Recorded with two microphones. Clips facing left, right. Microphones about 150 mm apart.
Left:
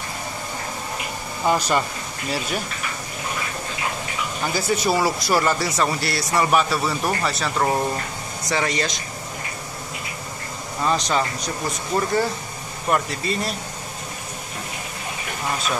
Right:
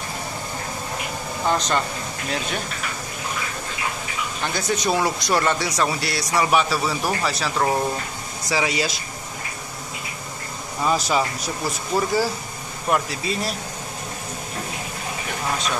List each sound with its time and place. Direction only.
1.4 s speech: 10° left (ahead or behind)
4.4 s speech: 5° left (ahead or behind)
10.8 s speech: 5° right (ahead or behind)